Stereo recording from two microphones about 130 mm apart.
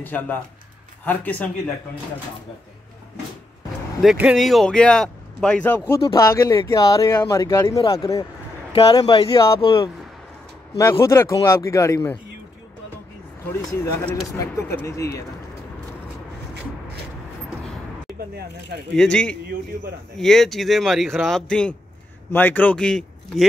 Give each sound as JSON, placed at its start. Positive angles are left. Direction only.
{"t": 0.0, "sound": "speech", "side_deg": 15}
{"t": 4.0, "sound": "speech", "side_deg": -5}
{"t": 6.1, "sound": "speech", "side_deg": 25}
{"t": 8.9, "sound": "speech", "side_deg": 40}
{"t": 9.3, "sound": "speech", "side_deg": 25}
{"t": 9.6, "sound": "speech", "side_deg": 40}
{"t": 10.8, "sound": "speech", "side_deg": 25}
{"t": 13.5, "sound": "speech", "side_deg": 20}
{"t": 18.9, "sound": "speech", "side_deg": 5}